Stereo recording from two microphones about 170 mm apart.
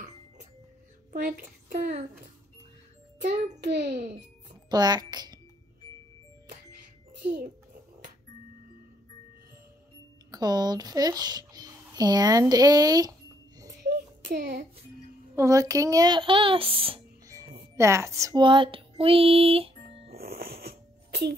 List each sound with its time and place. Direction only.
1.1 s a woman's voice: 55° right (ahead or behind)
3.6 s a child's voice: 70° right (ahead or behind)
4.6 s speech: 25° right (ahead or behind)
10.3 s a child's voice: 25° right (ahead or behind)
13.8 s music: 60° right (ahead or behind)
15.3 s speech: 20° right (ahead or behind)
17.7 s music: 15° right (ahead or behind); by 20.2 s 35° right (ahead or behind)
20.2 s music: 65° right (ahead or behind)
20.6 s a sound: 70° right (ahead or behind)